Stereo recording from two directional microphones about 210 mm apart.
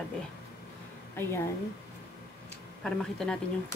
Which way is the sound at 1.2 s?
10° left (ahead or behind).